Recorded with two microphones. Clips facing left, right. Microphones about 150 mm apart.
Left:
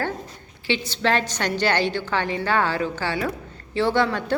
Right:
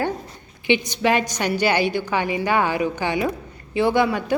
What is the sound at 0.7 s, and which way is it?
A woman's voice, 15° right (ahead or behind).